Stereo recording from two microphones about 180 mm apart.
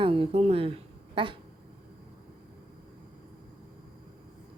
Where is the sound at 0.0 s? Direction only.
30° right (ahead or behind).